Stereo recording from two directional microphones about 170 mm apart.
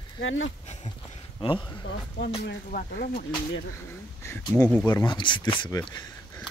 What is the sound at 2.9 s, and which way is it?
Speech, 55° left (ahead or behind).